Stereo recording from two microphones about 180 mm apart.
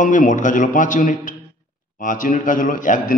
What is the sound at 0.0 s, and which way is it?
A man's voice, 45° left (ahead or behind).